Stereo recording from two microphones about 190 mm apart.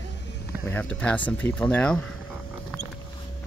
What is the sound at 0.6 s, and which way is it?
Speech, 10° left (ahead or behind).